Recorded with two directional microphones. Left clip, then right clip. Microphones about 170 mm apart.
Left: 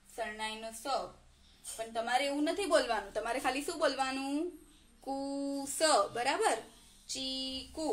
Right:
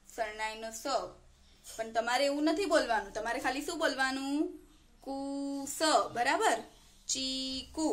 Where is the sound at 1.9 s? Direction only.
35° right (ahead or behind).